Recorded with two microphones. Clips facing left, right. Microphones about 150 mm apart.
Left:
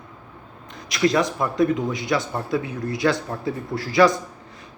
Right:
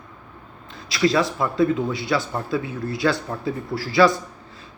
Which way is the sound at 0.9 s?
20° left (ahead or behind).